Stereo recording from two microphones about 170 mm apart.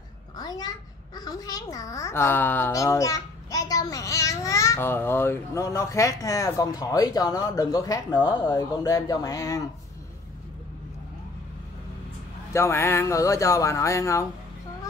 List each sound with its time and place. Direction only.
0.4 s a child's voice: 25° left (ahead or behind)
12.5 s speech: 15° left (ahead or behind)